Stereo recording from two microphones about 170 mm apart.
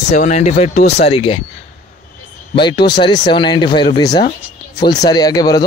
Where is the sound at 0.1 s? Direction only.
40° left (ahead or behind).